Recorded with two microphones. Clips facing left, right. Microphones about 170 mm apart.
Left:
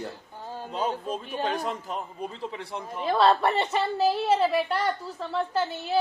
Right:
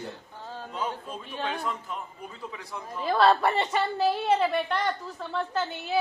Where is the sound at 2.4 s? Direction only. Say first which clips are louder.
Left 4 dB; 25° left (ahead or behind).